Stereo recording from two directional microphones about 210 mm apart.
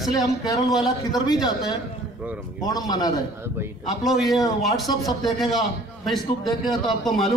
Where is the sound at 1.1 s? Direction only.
20° left (ahead or behind).